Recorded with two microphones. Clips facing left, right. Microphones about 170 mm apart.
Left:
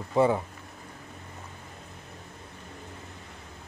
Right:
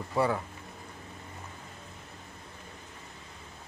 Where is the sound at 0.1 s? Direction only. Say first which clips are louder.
Left 5 dB; 20° left (ahead or behind).